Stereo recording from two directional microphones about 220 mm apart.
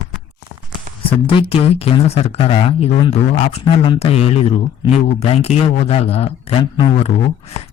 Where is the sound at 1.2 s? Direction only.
25° left (ahead or behind).